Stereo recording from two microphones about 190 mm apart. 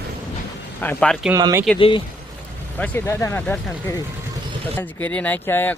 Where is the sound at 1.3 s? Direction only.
15° right (ahead or behind).